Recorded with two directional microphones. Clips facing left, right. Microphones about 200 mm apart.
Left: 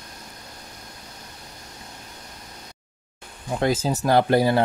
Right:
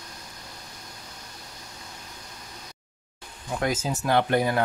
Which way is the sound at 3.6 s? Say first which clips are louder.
Left 5 dB; 30° left (ahead or behind).